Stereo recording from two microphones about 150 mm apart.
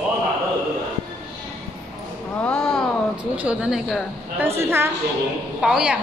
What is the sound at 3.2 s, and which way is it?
Speech, 10° right (ahead or behind).